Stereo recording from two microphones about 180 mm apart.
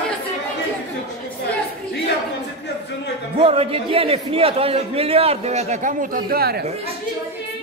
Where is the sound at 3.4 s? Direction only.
30° right (ahead or behind); by 6.6 s 60° right (ahead or behind).